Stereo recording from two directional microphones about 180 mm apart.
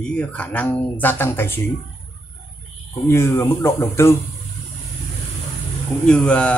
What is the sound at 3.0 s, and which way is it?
Speech, 15° left (ahead or behind).